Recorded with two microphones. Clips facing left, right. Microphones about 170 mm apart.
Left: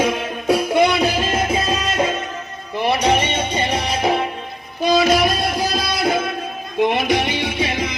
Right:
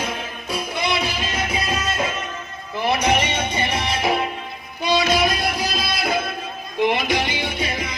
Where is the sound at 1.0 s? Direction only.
50° left (ahead or behind).